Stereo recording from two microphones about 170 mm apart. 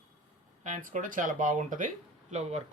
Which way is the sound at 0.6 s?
50° right (ahead or behind).